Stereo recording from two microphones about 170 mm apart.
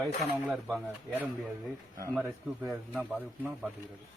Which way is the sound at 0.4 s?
5° right (ahead or behind).